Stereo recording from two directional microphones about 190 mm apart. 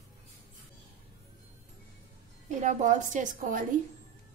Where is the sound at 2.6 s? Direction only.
40° right (ahead or behind).